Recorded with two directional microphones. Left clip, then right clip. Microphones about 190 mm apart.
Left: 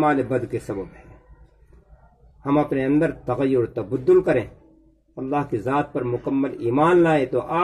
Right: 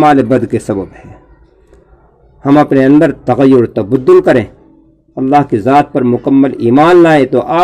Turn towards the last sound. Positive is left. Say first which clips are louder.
# right 12 dB
turn(degrees=-45)  # may be behind; listen again after turning